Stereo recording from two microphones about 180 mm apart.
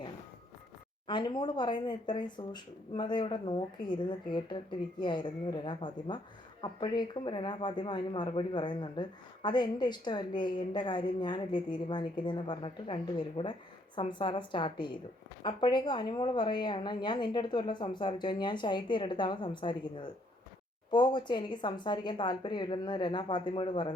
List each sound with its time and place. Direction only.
1.0 s speech: 25° left (ahead or behind)